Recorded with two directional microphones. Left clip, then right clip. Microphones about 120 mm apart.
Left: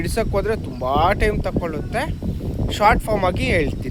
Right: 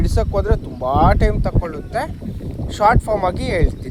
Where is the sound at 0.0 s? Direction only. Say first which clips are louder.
Right 1 dB; 15° left (ahead or behind).